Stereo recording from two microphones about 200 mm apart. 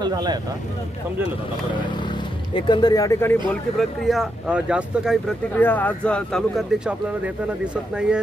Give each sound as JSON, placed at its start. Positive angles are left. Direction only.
{"t": 0.0, "sound": "speech", "side_deg": -20}
{"t": 2.0, "sound": "speech", "side_deg": 25}
{"t": 4.0, "sound": "speech", "side_deg": 0}
{"t": 5.6, "sound": "speech", "side_deg": 10}